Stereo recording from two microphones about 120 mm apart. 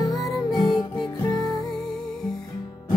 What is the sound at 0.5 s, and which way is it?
Music, 35° left (ahead or behind).